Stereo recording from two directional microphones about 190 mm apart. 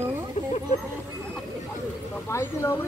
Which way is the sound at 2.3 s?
15° left (ahead or behind).